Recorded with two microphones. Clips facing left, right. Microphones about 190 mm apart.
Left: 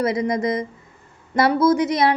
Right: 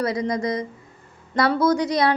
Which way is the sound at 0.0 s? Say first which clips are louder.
Left 3 dB; 20° left (ahead or behind).